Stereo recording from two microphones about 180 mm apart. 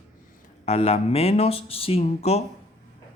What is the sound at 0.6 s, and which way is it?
Speech, 35° left (ahead or behind).